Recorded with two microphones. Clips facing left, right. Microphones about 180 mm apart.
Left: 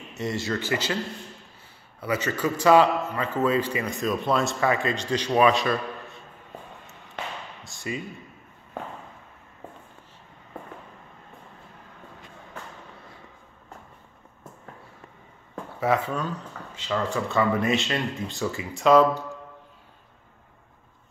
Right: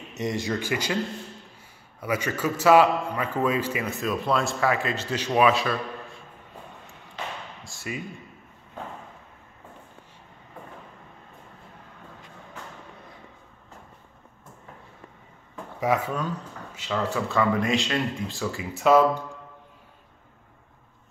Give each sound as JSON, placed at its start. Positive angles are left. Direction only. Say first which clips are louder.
{"t": 0.1, "sound": "a man's voice", "louder": "right 1 dB", "side_deg": -15}
{"t": 2.0, "sound": "a man's voice", "louder": "left 1 dB", "side_deg": -10}
{"t": 7.6, "sound": "speech", "louder": "left 2 dB", "side_deg": -5}
{"t": 15.8, "sound": "a man's voice", "louder": "even", "side_deg": -10}